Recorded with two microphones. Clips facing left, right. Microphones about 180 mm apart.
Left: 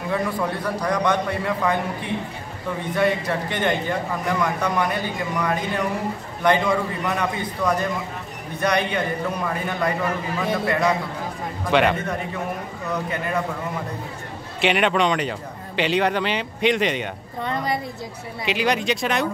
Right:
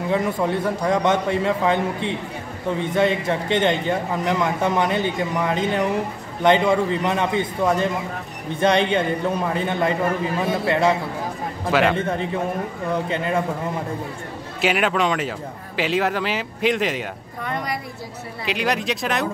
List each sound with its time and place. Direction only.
0.1 s a man's voice: 20° right (ahead or behind)
11.7 s a man's voice: centre (ahead or behind)
12.8 s a man's voice: 25° right (ahead or behind)
14.6 s a man's voice: centre (ahead or behind)
17.4 s a woman's voice: 25° left (ahead or behind)
18.4 s a man's voice: centre (ahead or behind)